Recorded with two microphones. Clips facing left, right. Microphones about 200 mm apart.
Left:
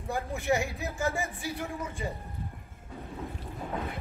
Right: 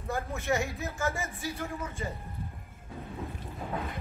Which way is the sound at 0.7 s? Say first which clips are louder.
Left 2 dB; 15° left (ahead or behind).